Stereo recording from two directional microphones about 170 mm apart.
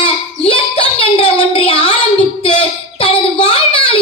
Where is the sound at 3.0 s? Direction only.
35° left (ahead or behind).